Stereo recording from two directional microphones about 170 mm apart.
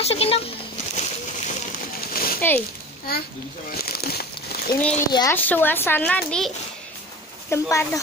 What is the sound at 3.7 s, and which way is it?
Crumpling, 65° left (ahead or behind).